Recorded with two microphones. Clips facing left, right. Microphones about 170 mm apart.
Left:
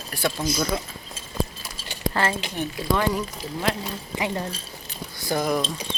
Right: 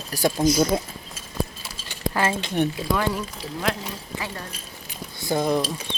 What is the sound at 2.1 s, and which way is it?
Speech, 15° right (ahead or behind).